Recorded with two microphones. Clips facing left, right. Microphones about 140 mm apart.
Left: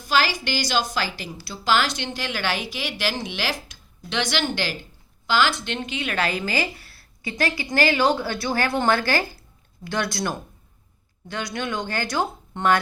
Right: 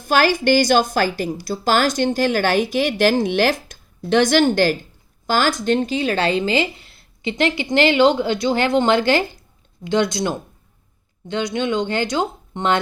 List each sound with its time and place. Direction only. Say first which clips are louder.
0.0 s speech: right 6 dB; 50° right (ahead or behind); by 12.8 s 20° right (ahead or behind)